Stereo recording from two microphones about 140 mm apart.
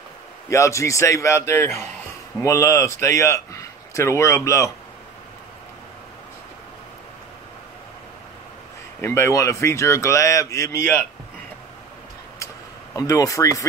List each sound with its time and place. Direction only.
0.5 s speech: 20° left (ahead or behind)
9.0 s speech: 20° left (ahead or behind)
12.9 s speech: 25° left (ahead or behind)